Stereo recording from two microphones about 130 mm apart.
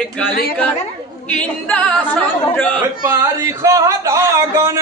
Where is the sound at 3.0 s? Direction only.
20° right (ahead or behind).